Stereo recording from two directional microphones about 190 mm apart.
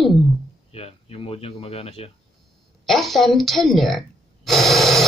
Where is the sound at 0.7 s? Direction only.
30° left (ahead or behind).